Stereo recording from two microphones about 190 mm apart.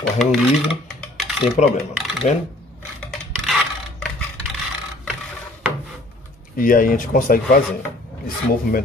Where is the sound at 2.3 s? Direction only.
40° left (ahead or behind).